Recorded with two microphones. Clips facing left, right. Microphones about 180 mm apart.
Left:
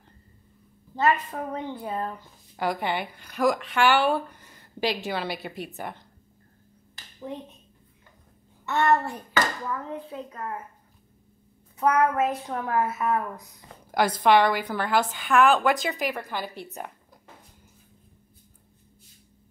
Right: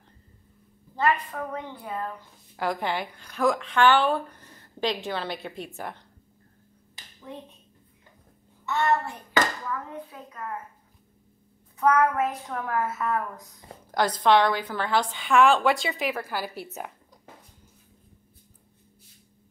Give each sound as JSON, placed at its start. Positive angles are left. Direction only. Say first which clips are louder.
{"t": 0.9, "sound": "a woman's voice", "louder": "left 1 dB", "side_deg": 30}
{"t": 2.5, "sound": "a woman's voice", "louder": "left 1 dB", "side_deg": 0}
{"t": 8.6, "sound": "a child's voice", "louder": "left 2 dB", "side_deg": 55}
{"t": 10.0, "sound": "a woman's voice", "louder": "left 7 dB", "side_deg": 30}
{"t": 11.8, "sound": "a woman's voice", "louder": "even", "side_deg": 25}